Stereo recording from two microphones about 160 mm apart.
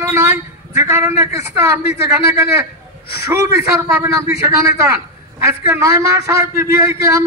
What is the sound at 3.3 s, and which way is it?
A man's voice, 15° right (ahead or behind).